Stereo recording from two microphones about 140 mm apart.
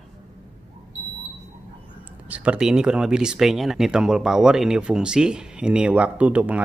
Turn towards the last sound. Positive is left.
turn(degrees=-10)  # may be behind; listen again after turning